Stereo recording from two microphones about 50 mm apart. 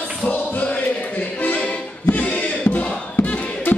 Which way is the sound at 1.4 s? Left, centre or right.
Left.